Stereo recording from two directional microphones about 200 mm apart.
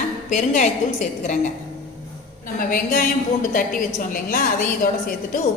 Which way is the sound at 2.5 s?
45° left (ahead or behind).